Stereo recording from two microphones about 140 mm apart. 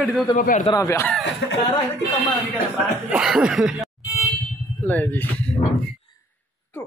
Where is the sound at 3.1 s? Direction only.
5° right (ahead or behind).